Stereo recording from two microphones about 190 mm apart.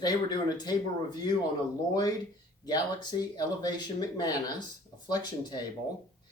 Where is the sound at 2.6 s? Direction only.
20° left (ahead or behind).